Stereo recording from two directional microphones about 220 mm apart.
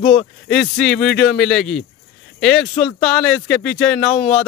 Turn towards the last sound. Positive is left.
turn(degrees=5)  # may be behind; listen again after turning